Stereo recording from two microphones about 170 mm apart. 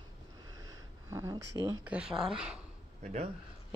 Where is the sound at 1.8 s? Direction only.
5° right (ahead or behind).